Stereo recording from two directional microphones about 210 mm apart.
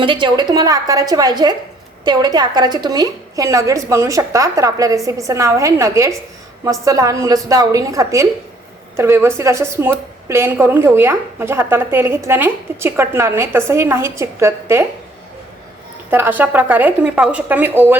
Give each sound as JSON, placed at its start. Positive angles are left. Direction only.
{"t": 0.0, "sound": "a woman's voice", "side_deg": -25}
{"t": 16.0, "sound": "a woman's voice", "side_deg": -10}